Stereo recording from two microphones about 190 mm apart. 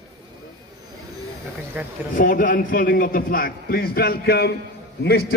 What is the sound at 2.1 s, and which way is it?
A man's voice, 45° left (ahead or behind).